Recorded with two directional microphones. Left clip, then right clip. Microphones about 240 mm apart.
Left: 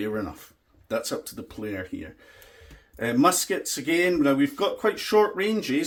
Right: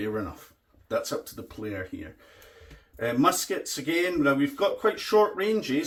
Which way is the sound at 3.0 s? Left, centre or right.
Left.